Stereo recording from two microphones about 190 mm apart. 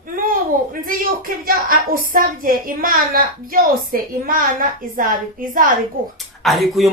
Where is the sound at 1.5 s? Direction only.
50° right (ahead or behind).